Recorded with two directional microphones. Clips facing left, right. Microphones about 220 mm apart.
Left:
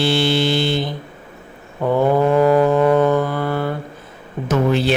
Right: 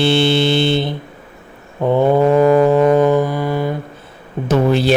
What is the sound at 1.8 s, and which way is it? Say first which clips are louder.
Mantra: right 3 dB; 20° right (ahead or behind).